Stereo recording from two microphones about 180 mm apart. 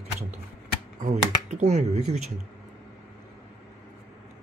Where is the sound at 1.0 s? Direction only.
40° right (ahead or behind).